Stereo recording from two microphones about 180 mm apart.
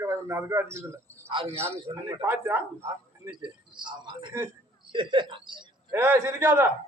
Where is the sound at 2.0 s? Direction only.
15° right (ahead or behind).